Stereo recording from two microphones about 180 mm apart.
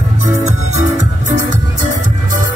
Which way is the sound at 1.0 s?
40° right (ahead or behind).